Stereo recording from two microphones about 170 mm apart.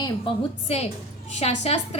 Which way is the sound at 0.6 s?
40° left (ahead or behind).